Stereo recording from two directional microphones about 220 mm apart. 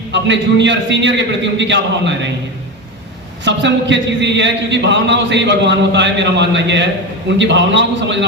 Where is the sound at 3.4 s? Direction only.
55° right (ahead or behind).